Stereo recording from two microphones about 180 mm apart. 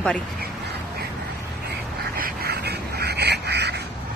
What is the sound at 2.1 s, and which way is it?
Duck, 55° right (ahead or behind).